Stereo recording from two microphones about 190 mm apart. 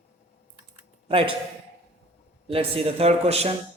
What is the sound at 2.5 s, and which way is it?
A man's voice, 30° right (ahead or behind).